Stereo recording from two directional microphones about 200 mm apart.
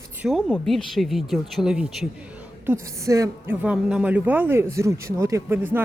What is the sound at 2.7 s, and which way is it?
Speech, 15° right (ahead or behind).